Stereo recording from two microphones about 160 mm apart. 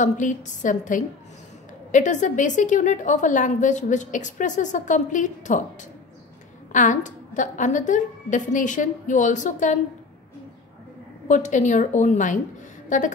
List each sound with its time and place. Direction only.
0.0 s a woman's voice: 50° left (ahead or behind)
6.7 s a woman's voice: 50° left (ahead or behind)
11.2 s a woman's voice: 50° left (ahead or behind)